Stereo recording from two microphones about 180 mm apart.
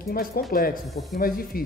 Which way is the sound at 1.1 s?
55° left (ahead or behind).